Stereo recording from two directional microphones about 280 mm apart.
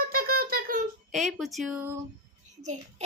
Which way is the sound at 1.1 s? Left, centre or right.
Centre.